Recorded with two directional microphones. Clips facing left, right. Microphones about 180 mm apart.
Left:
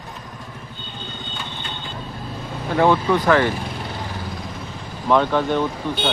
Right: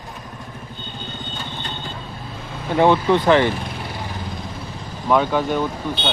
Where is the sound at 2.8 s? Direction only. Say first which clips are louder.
Right 2 dB; 20° right (ahead or behind).